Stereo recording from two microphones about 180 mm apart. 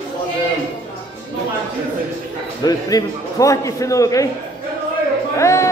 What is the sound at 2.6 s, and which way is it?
A man's voice, 20° left (ahead or behind).